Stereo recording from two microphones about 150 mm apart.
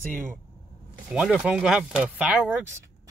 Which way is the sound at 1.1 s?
5° right (ahead or behind).